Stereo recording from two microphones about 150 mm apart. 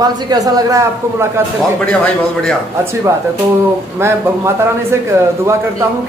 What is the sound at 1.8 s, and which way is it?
Speech, 5° left (ahead or behind).